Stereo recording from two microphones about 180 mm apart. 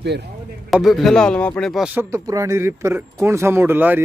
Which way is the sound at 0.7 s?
Centre (ahead or behind).